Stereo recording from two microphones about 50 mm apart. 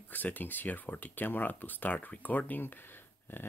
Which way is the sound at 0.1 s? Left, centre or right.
Left.